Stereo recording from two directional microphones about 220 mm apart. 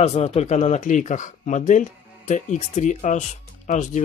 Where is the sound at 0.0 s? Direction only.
30° left (ahead or behind).